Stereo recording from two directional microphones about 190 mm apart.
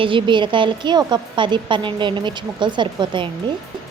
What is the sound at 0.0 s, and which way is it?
Speech, 25° right (ahead or behind).